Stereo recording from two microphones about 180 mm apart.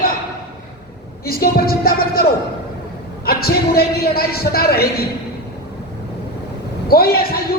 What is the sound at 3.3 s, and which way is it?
Speech, 60° left (ahead or behind).